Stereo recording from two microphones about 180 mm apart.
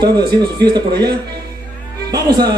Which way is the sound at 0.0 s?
25° right (ahead or behind).